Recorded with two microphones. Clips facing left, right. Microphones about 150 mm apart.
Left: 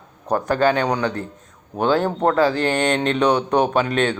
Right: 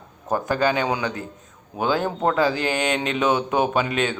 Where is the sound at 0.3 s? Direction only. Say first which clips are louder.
Left 3 dB; 5° right (ahead or behind).